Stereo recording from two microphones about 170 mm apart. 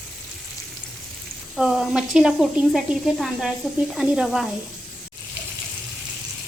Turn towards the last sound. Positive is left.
turn(degrees=0)  # may be behind; listen again after turning